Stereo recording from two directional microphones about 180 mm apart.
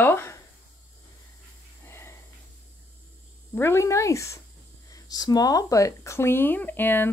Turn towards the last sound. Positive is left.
turn(degrees=10)  # may be behind; listen again after turning